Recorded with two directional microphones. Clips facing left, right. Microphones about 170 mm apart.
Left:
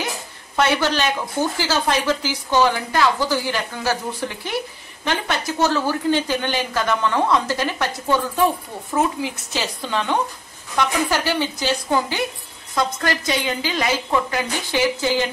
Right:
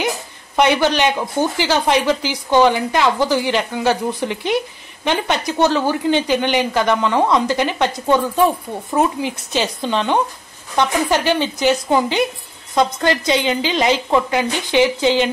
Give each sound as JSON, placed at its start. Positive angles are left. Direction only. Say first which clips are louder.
{"t": 0.6, "sound": "a man's voice", "louder": "right 4 dB", "side_deg": -15}
{"t": 8.9, "sound": "a woman's voice", "louder": "right 3 dB", "side_deg": -20}